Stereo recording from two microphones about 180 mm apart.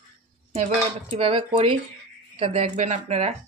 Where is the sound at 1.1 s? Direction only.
30° right (ahead or behind).